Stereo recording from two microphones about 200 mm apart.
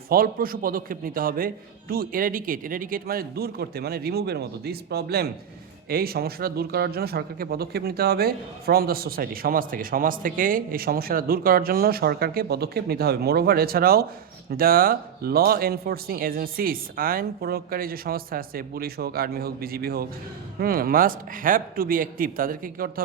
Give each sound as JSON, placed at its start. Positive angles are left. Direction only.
{"t": 0.1, "sound": "speech", "side_deg": -45}